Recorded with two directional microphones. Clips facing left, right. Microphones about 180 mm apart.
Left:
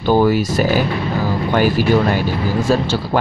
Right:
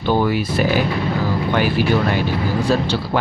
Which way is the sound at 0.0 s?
40° left (ahead or behind).